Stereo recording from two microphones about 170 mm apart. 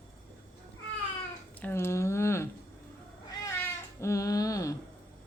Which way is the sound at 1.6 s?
15° left (ahead or behind).